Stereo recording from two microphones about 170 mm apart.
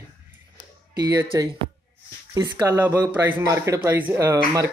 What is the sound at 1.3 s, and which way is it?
Speech, 20° right (ahead or behind).